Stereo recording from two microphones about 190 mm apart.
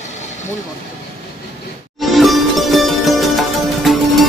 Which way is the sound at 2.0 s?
Centre (ahead or behind).